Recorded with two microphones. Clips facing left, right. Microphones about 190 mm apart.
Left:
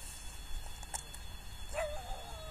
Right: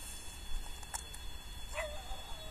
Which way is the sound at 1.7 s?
50° left (ahead or behind).